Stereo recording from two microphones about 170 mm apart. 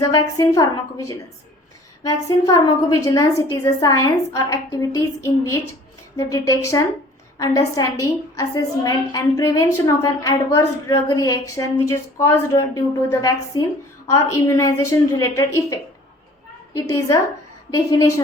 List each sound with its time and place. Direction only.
0.0 s a woman's voice: 20° left (ahead or behind)